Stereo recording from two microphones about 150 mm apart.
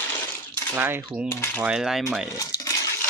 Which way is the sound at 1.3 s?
15° left (ahead or behind).